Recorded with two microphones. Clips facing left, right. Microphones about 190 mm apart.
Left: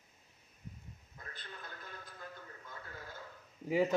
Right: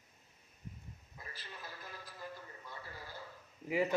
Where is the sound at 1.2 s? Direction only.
5° right (ahead or behind).